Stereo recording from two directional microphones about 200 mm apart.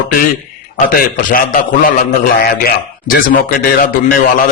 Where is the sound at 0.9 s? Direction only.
45° left (ahead or behind).